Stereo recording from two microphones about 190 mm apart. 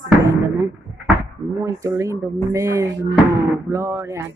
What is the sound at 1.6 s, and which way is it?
Speech, 15° right (ahead or behind).